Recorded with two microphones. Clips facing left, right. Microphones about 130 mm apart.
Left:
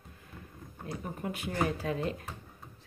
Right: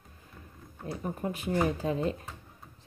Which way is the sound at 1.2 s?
35° right (ahead or behind).